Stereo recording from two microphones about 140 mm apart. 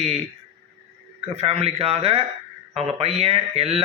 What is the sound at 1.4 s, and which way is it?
A man's voice, 45° right (ahead or behind).